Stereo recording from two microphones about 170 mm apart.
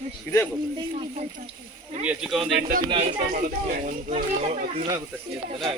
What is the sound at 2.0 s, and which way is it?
Speech, 5° right (ahead or behind).